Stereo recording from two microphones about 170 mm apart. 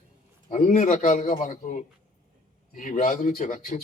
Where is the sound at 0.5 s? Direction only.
45° left (ahead or behind).